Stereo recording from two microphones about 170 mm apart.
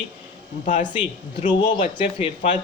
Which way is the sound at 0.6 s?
45° left (ahead or behind).